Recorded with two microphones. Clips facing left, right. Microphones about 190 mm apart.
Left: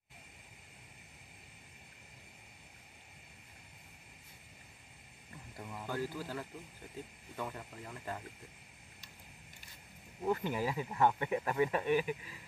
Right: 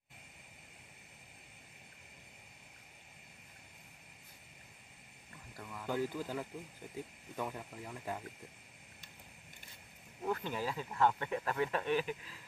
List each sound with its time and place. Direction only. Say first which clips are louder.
5.6 s speech: left 2 dB; 20° left (ahead or behind)
5.9 s speech: right 3 dB; 15° right (ahead or behind)
10.2 s speech: left 3 dB; 15° left (ahead or behind)